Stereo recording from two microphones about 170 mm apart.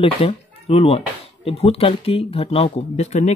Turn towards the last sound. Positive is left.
turn(degrees=40)  # may be behind; listen again after turning